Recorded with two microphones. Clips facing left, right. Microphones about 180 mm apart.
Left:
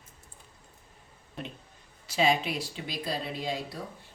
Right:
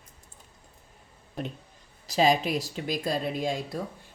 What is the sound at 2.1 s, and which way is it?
Speech, 40° right (ahead or behind).